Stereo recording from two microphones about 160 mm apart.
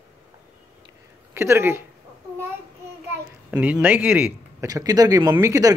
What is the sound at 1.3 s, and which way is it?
Speech, 15° right (ahead or behind).